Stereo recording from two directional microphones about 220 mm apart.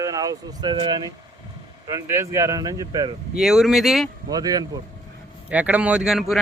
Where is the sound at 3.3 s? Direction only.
Centre (ahead or behind).